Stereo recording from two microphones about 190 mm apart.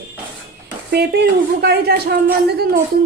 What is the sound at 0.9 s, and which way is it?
A woman's voice, 55° right (ahead or behind).